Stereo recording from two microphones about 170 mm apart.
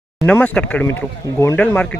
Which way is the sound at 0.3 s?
10° left (ahead or behind).